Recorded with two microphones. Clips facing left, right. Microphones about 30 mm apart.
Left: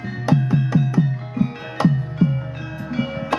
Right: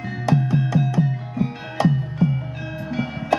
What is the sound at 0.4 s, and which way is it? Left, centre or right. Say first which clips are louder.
Music: left 1 dB; centre.